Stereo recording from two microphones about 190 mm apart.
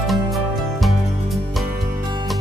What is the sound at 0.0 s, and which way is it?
Music, centre (ahead or behind).